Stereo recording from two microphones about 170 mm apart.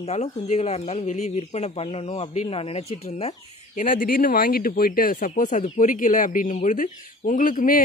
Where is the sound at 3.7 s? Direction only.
55° left (ahead or behind).